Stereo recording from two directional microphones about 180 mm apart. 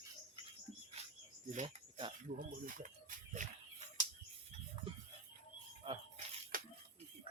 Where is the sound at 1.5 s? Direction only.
35° right (ahead or behind).